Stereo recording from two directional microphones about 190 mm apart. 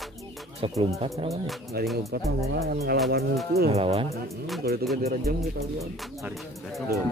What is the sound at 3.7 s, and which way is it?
Speech, 30° right (ahead or behind).